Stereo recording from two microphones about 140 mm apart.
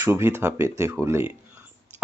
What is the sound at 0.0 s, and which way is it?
Speech, 15° right (ahead or behind).